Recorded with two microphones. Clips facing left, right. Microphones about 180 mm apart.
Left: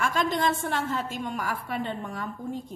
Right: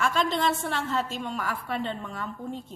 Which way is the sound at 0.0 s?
45° left (ahead or behind).